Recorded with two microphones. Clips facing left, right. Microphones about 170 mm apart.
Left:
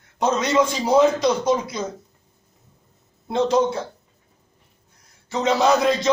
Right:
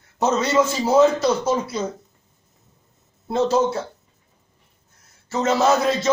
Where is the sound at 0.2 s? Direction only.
5° right (ahead or behind).